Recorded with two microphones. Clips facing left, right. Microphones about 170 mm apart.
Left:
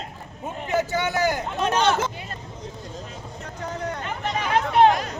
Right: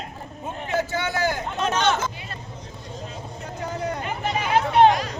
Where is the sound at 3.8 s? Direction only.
10° right (ahead or behind).